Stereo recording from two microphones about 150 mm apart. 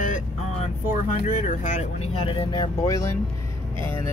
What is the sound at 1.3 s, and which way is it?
Speech, 55° left (ahead or behind).